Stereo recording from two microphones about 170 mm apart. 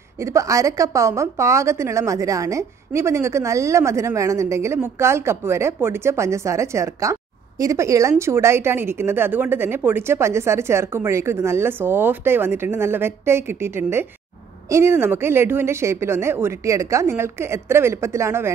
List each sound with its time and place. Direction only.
0.2 s a woman's voice: 15° right (ahead or behind)